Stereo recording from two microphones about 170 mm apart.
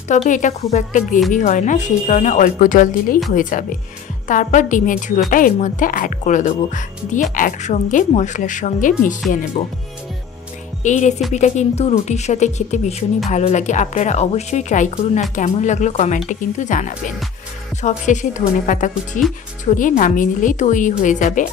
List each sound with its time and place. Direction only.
0.3 s a woman's voice: 45° left (ahead or behind)
10.8 s a woman's voice: 45° left (ahead or behind)